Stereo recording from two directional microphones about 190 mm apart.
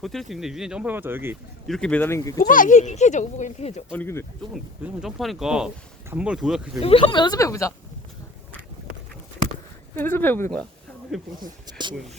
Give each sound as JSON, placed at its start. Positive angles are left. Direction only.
{"t": 0.0, "sound": "speech", "side_deg": 0}
{"t": 1.6, "sound": "speech", "side_deg": 5}
{"t": 2.4, "sound": "speech", "side_deg": 45}
{"t": 3.9, "sound": "speech", "side_deg": 10}
{"t": 4.8, "sound": "speech", "side_deg": -5}
{"t": 6.8, "sound": "speech", "side_deg": 30}
{"t": 9.9, "sound": "speech", "side_deg": 10}
{"t": 11.4, "sound": "speech", "side_deg": -20}